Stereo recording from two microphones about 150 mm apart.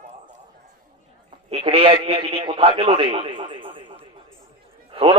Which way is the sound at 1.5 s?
35° right (ahead or behind).